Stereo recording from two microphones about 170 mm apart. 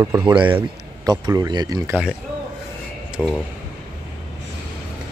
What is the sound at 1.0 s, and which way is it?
Speech, 20° right (ahead or behind).